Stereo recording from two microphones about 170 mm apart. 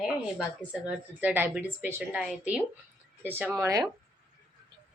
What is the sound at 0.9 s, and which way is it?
A woman's voice, 10° right (ahead or behind).